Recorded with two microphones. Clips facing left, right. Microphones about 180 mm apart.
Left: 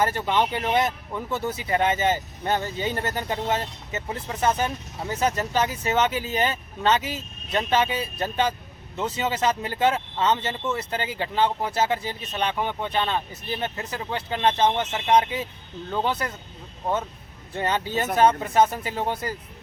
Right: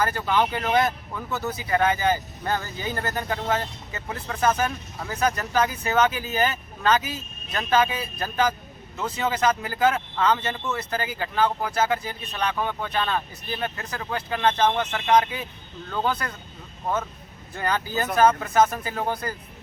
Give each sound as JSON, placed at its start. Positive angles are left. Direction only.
{"t": 0.0, "sound": "speech", "side_deg": 20}
{"t": 9.0, "sound": "speech", "side_deg": 25}
{"t": 17.5, "sound": "speech", "side_deg": 25}